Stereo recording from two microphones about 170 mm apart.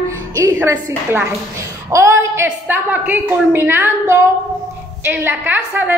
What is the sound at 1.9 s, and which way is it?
A woman's voice, 15° right (ahead or behind).